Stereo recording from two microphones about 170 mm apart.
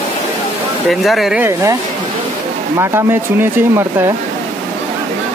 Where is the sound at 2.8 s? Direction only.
15° right (ahead or behind).